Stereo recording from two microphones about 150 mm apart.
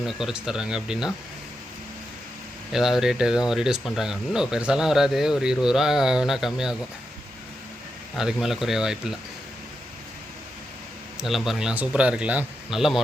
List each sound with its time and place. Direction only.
0.0 s speech: 5° right (ahead or behind)
2.7 s speech: centre (ahead or behind)
8.1 s speech: 5° right (ahead or behind)
11.2 s speech: centre (ahead or behind)